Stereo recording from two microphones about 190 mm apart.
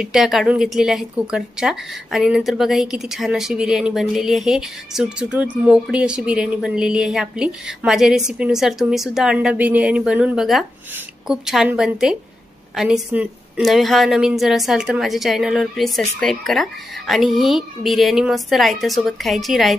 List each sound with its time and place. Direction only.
0.0 s a woman's voice: 5° right (ahead or behind)